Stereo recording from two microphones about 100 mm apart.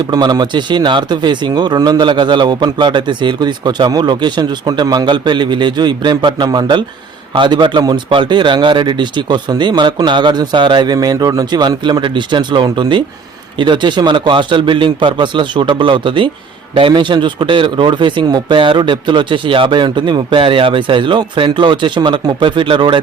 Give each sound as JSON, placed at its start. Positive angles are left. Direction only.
{"t": 0.1, "sound": "speech", "side_deg": -45}